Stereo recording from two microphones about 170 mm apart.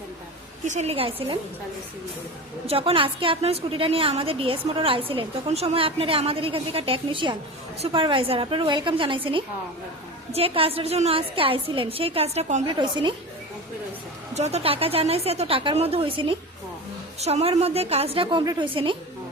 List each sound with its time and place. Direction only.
0.6 s a woman's voice: 45° right (ahead or behind)
2.6 s a woman's voice: 35° right (ahead or behind)
12.6 s a woman's voice: 25° right (ahead or behind)
14.3 s a woman's voice: 40° right (ahead or behind)